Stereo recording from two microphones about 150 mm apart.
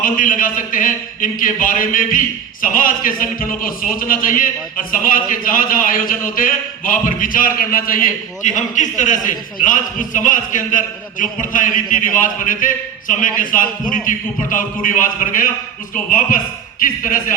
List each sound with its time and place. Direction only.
0.0 s a man's voice: 65° left (ahead or behind)
8.4 s a man's voice: 55° left (ahead or behind)